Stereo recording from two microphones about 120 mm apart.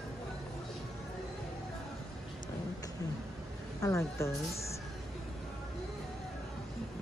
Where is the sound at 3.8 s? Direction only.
25° left (ahead or behind).